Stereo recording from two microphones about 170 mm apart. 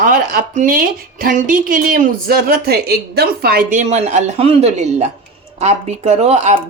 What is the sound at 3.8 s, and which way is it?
A woman's voice, 40° right (ahead or behind).